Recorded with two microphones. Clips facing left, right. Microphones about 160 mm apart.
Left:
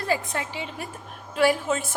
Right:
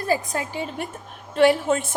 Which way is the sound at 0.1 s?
40° right (ahead or behind).